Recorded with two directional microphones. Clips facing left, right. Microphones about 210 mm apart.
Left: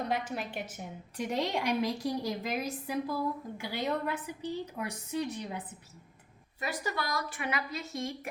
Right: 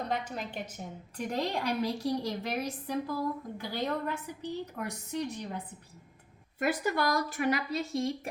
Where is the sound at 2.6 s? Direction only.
10° left (ahead or behind).